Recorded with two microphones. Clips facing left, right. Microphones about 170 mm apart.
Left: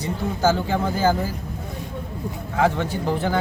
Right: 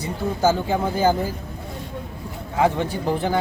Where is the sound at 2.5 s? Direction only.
15° right (ahead or behind).